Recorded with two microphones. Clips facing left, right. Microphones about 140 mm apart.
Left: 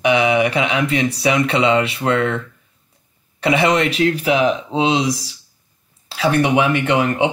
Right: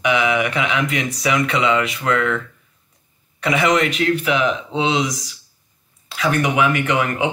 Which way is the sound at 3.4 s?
30° left (ahead or behind).